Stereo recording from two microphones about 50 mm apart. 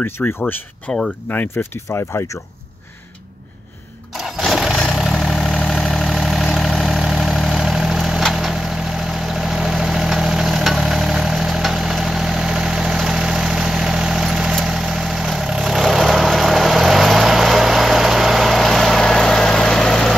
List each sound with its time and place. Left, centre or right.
0.2 s speech: left
1.6 s speech: left
4.1 s lawn mower: centre
4.9 s vehicle: centre
6.1 s vehicle: centre